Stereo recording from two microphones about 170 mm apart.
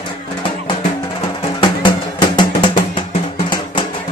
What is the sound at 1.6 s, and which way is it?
Music, 25° left (ahead or behind).